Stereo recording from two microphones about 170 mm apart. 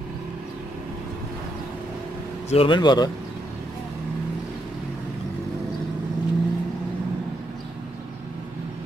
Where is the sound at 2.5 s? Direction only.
30° left (ahead or behind).